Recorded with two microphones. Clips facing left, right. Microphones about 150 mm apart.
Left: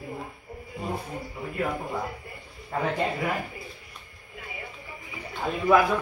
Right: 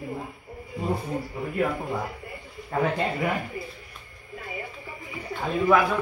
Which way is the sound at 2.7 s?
Centre (ahead or behind).